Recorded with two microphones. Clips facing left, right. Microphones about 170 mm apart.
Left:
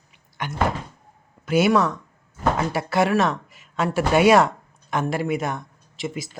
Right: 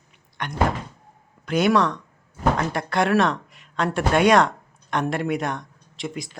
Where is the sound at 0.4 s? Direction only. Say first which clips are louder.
Right 1 dB; 5° left (ahead or behind).